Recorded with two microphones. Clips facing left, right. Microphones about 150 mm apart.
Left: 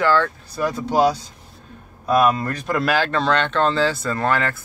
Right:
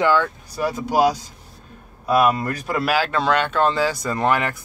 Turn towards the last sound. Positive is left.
turn(degrees=-15)  # may be behind; listen again after turning